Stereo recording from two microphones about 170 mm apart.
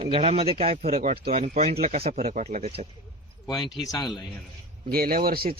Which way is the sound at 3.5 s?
25° left (ahead or behind).